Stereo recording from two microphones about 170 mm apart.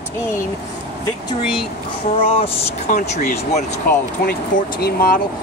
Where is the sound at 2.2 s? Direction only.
35° left (ahead or behind).